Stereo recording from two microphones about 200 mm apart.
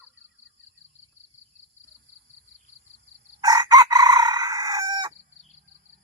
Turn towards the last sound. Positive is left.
turn(degrees=-20)  # may be behind; listen again after turning